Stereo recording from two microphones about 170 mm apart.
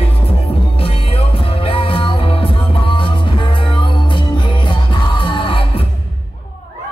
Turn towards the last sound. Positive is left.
turn(degrees=30)  # may be behind; listen again after turning